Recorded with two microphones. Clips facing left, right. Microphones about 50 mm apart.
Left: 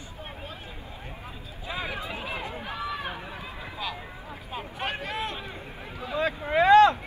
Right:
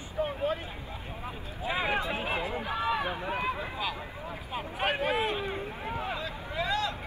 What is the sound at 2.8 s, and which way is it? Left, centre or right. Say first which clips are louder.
Run: right 4 dB; right.